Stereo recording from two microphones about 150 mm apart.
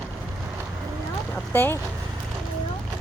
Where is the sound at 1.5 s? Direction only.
15° left (ahead or behind).